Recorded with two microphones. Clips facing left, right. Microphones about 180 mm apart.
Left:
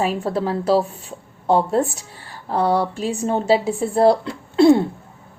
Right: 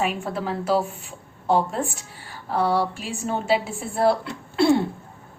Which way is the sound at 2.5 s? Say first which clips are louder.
Left 3 dB; 20° left (ahead or behind).